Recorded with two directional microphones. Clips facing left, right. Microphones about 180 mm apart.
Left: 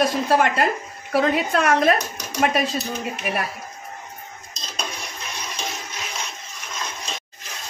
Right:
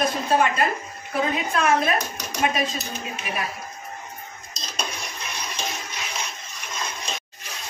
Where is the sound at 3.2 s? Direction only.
60° left (ahead or behind).